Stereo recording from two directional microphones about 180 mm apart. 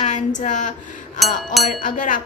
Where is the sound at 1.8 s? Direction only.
45° left (ahead or behind).